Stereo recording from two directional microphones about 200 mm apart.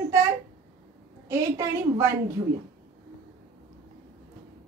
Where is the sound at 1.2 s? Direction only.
15° right (ahead or behind).